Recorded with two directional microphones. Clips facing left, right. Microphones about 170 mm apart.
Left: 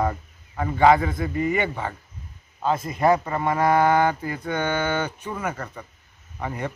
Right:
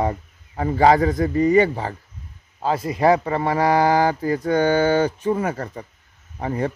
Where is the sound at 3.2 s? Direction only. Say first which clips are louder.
Right 2 dB; 35° right (ahead or behind).